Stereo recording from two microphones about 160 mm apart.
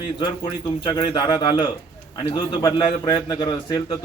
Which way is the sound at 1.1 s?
30° left (ahead or behind).